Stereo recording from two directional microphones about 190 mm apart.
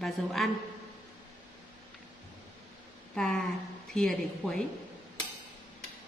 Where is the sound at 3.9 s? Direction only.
5° left (ahead or behind).